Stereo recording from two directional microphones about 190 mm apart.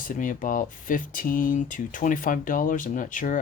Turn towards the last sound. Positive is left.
turn(degrees=45)  # may be behind; listen again after turning